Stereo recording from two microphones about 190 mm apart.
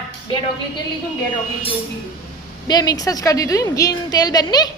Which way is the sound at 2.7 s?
20° left (ahead or behind).